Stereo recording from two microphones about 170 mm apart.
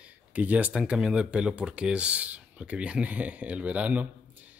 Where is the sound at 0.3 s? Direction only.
10° right (ahead or behind).